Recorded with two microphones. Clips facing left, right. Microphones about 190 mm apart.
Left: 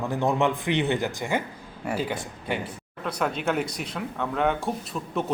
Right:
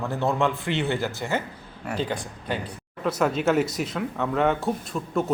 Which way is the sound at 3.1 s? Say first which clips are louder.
Right 4 dB; 5° right (ahead or behind).